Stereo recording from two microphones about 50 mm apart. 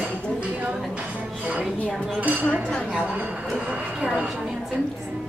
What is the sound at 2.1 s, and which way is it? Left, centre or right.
Speech, right.